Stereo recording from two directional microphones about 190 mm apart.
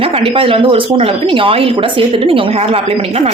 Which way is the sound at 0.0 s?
30° right (ahead or behind).